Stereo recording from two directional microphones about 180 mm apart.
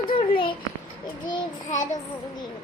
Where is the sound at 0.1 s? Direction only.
30° left (ahead or behind).